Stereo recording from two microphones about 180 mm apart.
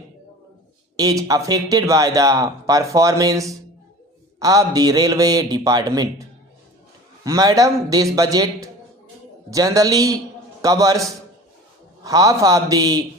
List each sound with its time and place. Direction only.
0.9 s a man's voice: 20° right (ahead or behind)
7.3 s a man's voice: 20° right (ahead or behind)
12.0 s a man's voice: 20° right (ahead or behind)